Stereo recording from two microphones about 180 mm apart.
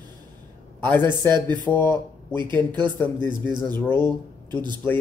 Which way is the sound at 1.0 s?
25° right (ahead or behind).